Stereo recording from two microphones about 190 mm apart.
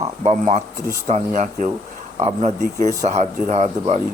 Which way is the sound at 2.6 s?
15° left (ahead or behind).